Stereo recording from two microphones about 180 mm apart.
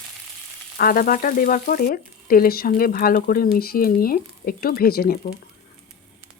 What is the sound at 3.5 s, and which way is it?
Frying, 55° left (ahead or behind).